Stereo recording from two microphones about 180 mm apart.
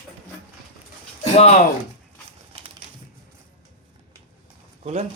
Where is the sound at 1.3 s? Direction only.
40° left (ahead or behind).